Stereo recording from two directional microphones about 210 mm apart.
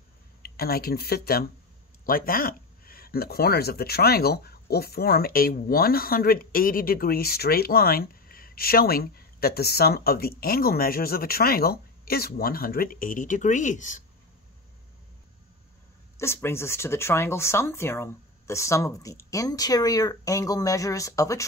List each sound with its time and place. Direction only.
0.4 s speech: 45° left (ahead or behind)
16.2 s speech: 10° left (ahead or behind)